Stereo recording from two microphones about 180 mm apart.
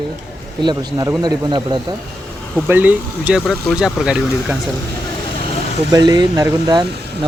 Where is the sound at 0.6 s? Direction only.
25° right (ahead or behind).